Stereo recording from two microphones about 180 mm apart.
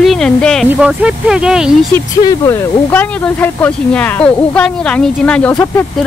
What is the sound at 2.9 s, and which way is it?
Speech, 10° left (ahead or behind).